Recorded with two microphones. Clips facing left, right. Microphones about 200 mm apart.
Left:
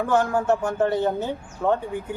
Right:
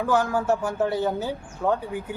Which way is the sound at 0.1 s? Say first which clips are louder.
Left 1 dB; 5° right (ahead or behind).